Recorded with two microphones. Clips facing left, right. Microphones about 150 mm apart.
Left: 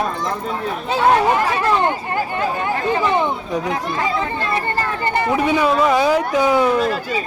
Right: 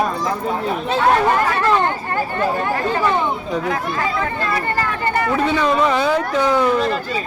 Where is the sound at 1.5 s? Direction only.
15° left (ahead or behind).